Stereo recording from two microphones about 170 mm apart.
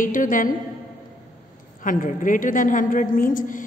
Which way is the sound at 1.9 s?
50° left (ahead or behind).